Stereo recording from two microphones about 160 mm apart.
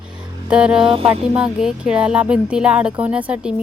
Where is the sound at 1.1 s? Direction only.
5° right (ahead or behind).